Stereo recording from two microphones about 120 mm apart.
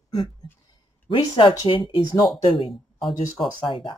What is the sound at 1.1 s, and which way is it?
Speech, 40° left (ahead or behind).